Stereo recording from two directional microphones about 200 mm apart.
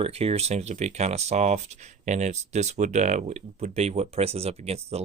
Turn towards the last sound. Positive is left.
turn(degrees=-30)  # may be behind; listen again after turning